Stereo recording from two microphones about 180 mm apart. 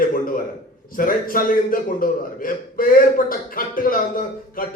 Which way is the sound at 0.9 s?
50° left (ahead or behind).